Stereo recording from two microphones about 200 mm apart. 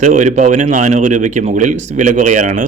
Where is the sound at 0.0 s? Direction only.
40° right (ahead or behind).